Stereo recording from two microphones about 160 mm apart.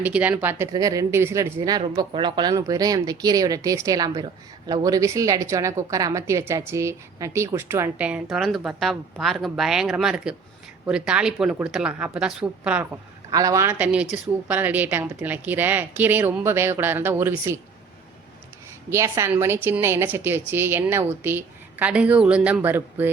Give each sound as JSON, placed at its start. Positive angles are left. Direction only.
{"t": 0.0, "sound": "a woman's voice", "side_deg": -10}
{"t": 0.7, "sound": "a woman's voice", "side_deg": -20}
{"t": 13.3, "sound": "a woman's voice", "side_deg": -20}
{"t": 18.9, "sound": "a woman's voice", "side_deg": -15}